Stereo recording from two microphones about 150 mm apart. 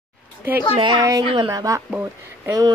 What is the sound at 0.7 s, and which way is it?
Speech, 35° right (ahead or behind).